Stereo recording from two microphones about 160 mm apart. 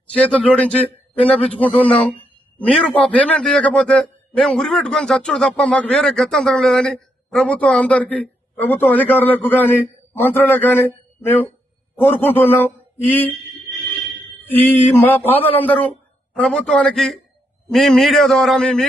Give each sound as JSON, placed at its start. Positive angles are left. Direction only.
{"t": 0.1, "sound": "a man's voice", "side_deg": 5}
{"t": 14.4, "sound": "a man's voice", "side_deg": 10}